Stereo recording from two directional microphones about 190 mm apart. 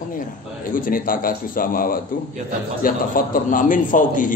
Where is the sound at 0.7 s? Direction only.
45° left (ahead or behind).